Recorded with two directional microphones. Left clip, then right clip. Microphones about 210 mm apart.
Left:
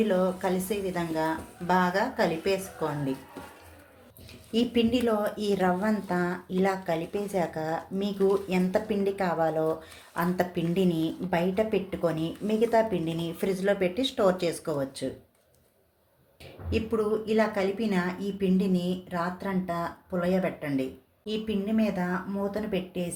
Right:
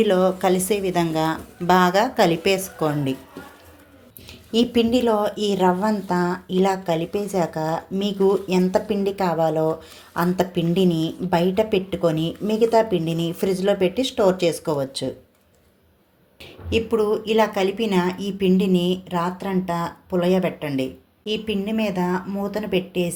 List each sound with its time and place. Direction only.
0.0 s a woman's voice: 40° right (ahead or behind)
4.5 s a woman's voice: 25° right (ahead or behind)
16.7 s a woman's voice: 30° right (ahead or behind)